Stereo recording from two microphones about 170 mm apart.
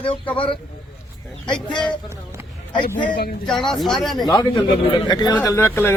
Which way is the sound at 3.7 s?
Centre (ahead or behind).